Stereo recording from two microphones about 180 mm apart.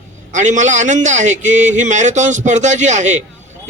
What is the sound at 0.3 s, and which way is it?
Speech, 40° right (ahead or behind).